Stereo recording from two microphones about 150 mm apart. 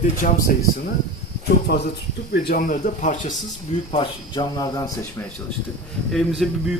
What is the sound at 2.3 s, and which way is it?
Speech, 80° left.